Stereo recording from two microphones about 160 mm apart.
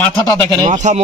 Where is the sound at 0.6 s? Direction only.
50° right (ahead or behind).